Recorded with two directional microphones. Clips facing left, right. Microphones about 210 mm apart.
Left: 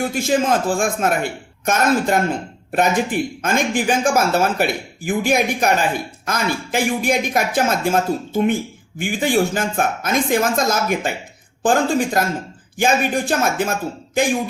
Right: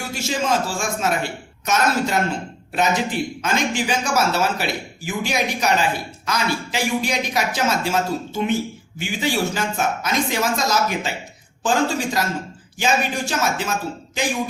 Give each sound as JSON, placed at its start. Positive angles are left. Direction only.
{"t": 0.0, "sound": "speech", "side_deg": 55}